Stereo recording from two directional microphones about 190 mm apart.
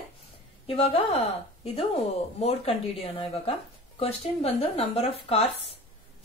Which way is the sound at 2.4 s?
30° left (ahead or behind).